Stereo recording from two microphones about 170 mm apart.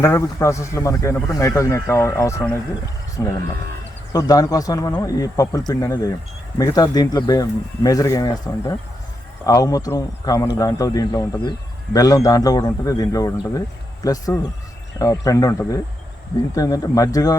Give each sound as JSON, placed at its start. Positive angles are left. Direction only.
{"t": 0.0, "sound": "a man's voice", "side_deg": 15}